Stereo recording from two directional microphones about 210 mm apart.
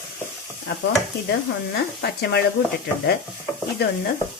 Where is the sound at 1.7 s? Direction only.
50° left (ahead or behind).